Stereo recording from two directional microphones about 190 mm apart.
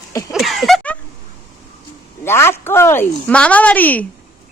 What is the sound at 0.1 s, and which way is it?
Speech, 15° left (ahead or behind).